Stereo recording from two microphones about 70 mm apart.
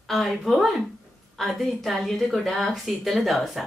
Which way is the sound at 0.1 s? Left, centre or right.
Centre.